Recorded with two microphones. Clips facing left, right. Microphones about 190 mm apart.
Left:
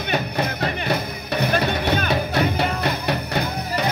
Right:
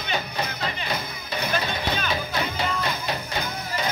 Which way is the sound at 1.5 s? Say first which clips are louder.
Left 5 dB; 65° left (ahead or behind).